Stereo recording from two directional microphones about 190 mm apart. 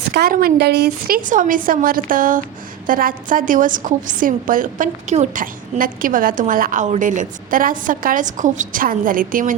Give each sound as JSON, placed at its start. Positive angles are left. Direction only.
{"t": 0.1, "sound": "a woman's voice", "side_deg": -55}